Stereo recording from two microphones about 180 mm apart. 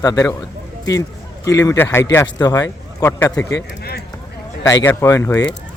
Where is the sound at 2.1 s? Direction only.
25° left (ahead or behind).